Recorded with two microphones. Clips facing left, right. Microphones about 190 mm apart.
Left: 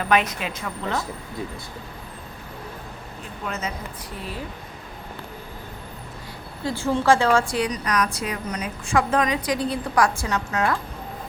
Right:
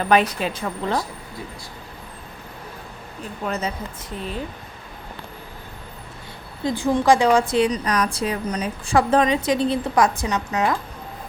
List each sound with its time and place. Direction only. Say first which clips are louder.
0.0 s a woman's voice: right 3 dB; 35° right (ahead or behind)
3.4 s a woman's voice: right 4 dB; 35° right (ahead or behind)
6.7 s a woman's voice: right 2 dB; 15° right (ahead or behind)